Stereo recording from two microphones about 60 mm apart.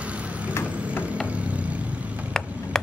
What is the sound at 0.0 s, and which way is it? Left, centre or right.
Vehicle, right.